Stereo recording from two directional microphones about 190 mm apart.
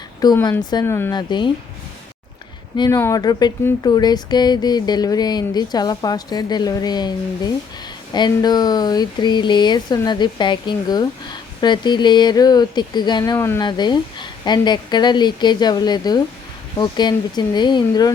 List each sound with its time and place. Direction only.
0.2 s speech: 20° left (ahead or behind)
1.1 s speech: 25° left (ahead or behind)
2.7 s speech: 20° left (ahead or behind)